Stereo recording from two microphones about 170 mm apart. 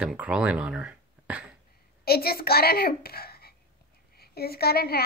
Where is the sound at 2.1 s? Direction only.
65° left (ahead or behind).